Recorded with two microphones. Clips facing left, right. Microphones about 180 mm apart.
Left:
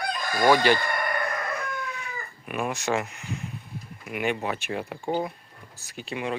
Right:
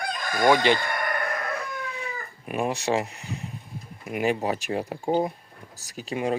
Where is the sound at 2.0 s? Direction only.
35° right (ahead or behind).